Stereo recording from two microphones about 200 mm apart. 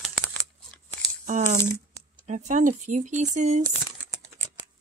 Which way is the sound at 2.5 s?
40° right (ahead or behind).